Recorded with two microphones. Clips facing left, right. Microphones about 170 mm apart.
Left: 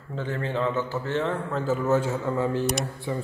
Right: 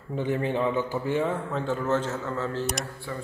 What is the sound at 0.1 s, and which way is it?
Speech, 15° right (ahead or behind).